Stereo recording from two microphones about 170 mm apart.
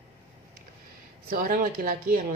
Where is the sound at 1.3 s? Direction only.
55° right (ahead or behind).